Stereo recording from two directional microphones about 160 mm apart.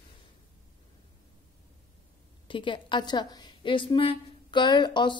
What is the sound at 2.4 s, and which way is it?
A woman's voice, 30° left (ahead or behind).